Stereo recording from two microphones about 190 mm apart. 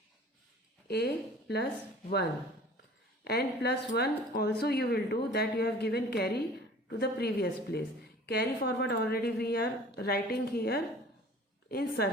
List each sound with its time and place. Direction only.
0.9 s a woman's voice: 60° left (ahead or behind)
3.2 s speech: 60° left (ahead or behind)